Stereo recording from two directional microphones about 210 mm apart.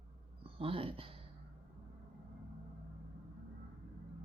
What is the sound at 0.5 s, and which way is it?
Speech, 25° right (ahead or behind).